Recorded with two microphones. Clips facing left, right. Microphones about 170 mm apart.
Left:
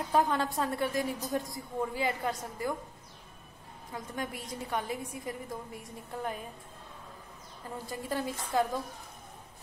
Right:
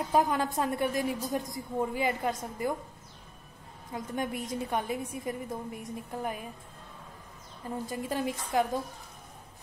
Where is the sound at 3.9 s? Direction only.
20° right (ahead or behind).